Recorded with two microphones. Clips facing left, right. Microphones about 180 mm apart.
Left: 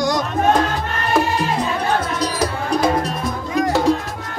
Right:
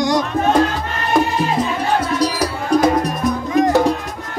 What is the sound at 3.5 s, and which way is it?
Music, 20° right (ahead or behind).